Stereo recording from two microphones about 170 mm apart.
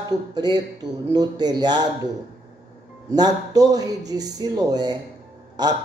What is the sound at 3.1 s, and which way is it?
Speech, 20° right (ahead or behind).